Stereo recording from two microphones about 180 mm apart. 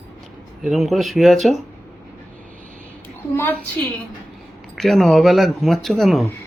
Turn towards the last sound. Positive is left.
turn(degrees=0)  # may be behind; listen again after turning